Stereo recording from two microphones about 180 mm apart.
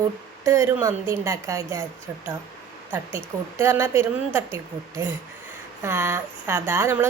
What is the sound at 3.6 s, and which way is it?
Speech, 15° right (ahead or behind).